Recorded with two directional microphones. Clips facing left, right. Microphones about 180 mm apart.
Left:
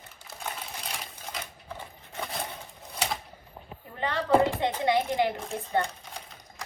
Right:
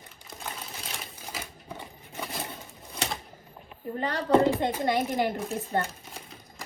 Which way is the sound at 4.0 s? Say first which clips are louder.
Right 1 dB; 45° right (ahead or behind).